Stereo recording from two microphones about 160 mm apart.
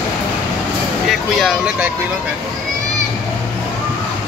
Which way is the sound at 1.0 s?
Centre (ahead or behind).